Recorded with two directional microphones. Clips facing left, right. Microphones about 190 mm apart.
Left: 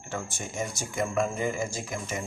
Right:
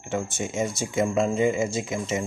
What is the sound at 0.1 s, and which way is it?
Speech, 20° right (ahead or behind).